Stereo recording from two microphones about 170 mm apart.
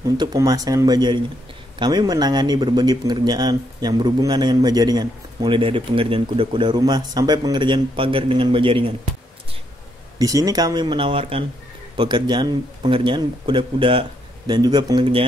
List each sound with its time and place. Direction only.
0.0 s speech: 20° right (ahead or behind)
10.1 s speech: 20° right (ahead or behind)